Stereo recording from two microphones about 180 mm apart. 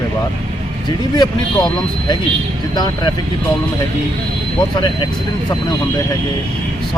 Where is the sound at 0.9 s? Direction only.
25° left (ahead or behind).